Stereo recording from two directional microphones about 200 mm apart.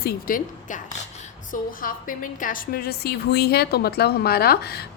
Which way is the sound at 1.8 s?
45° left (ahead or behind).